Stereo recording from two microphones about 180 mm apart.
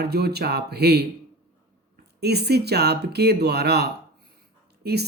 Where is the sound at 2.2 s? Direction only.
65° right (ahead or behind).